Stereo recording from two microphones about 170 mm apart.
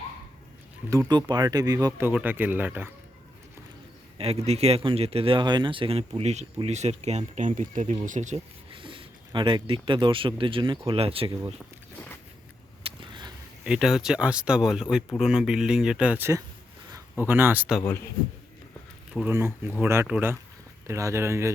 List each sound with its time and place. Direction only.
0.9 s speech: 20° right (ahead or behind)
2.0 s speech: 10° right (ahead or behind)
4.2 s speech: 35° right (ahead or behind)
8.7 s speech: 30° right (ahead or behind)
12.8 s a sound: 30° right (ahead or behind)
13.7 s speech: 5° right (ahead or behind)
19.2 s speech: 15° right (ahead or behind)